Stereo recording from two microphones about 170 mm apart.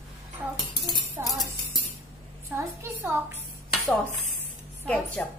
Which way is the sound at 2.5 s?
10° right (ahead or behind).